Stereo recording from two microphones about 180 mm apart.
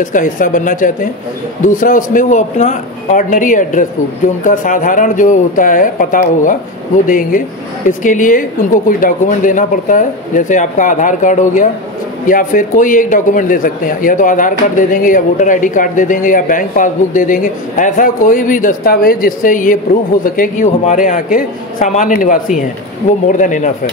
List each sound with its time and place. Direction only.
0.0 s speech: 45° left (ahead or behind)